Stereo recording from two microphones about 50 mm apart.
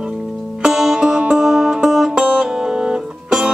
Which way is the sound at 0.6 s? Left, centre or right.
Centre.